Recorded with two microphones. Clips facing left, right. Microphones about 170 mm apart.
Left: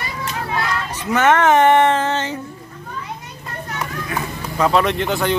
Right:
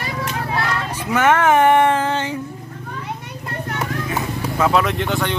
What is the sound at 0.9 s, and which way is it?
Speech, 10° right (ahead or behind).